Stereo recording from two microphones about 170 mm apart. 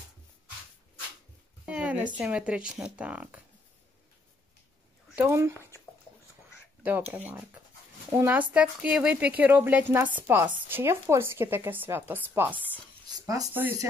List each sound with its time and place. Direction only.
1.7 s a sound: 10° right (ahead or behind)
2.1 s speech: 5° right (ahead or behind)
5.1 s speech: 15° right (ahead or behind)
6.8 s speech: 10° right (ahead or behind)